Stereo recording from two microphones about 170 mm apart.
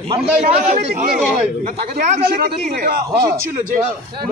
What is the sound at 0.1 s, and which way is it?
Speech, 35° right (ahead or behind).